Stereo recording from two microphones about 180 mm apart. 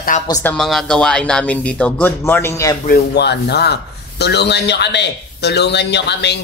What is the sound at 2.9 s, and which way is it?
Speech, 70° left (ahead or behind).